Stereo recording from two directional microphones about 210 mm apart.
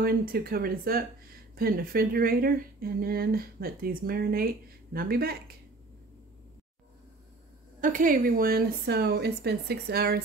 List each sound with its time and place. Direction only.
0.0 s speech: 45° right (ahead or behind)
7.8 s speech: 40° right (ahead or behind)